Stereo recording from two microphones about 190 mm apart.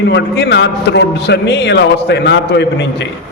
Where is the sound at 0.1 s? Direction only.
65° left (ahead or behind).